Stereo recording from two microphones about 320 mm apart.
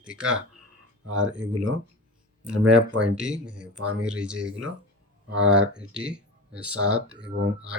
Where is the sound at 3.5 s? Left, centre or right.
Right.